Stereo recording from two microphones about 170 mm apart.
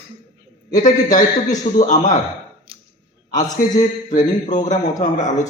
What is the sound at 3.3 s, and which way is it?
A man's voice, 45° left (ahead or behind).